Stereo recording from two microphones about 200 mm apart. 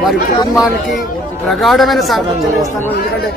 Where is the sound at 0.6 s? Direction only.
Centre (ahead or behind).